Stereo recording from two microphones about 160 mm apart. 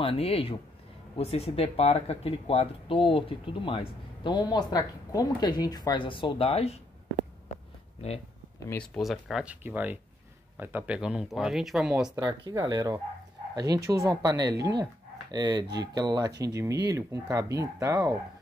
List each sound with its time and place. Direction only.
0.0 s speech: 35° left (ahead or behind)
8.9 s speech: centre (ahead or behind)
12.2 s speech: 25° right (ahead or behind)